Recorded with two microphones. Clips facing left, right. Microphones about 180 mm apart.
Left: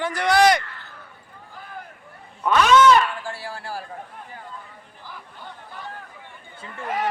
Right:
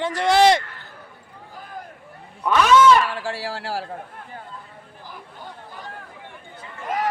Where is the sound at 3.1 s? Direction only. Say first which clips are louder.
Right 5 dB; 90° right.